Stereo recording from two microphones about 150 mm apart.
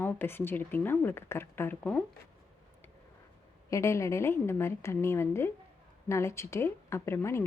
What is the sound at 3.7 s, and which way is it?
A woman's voice, 20° left (ahead or behind).